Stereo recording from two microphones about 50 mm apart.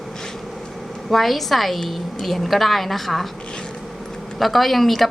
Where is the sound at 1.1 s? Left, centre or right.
Centre.